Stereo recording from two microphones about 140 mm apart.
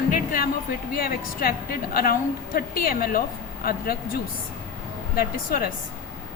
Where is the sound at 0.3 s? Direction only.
90° left.